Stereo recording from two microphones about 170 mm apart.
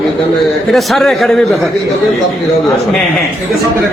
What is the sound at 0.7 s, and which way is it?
Speech, centre (ahead or behind).